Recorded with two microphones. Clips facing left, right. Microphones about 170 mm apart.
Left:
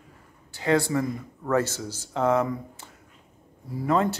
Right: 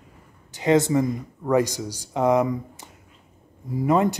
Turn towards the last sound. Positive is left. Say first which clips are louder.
# right 3 dB
turn(degrees=-15)  # may be behind; listen again after turning